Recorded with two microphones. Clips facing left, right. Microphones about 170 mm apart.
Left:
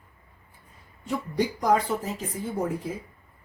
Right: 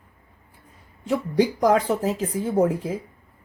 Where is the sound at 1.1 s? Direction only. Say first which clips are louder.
Right 6 dB; 90° right.